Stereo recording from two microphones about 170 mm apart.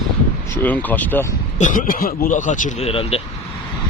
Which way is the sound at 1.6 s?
50° left (ahead or behind).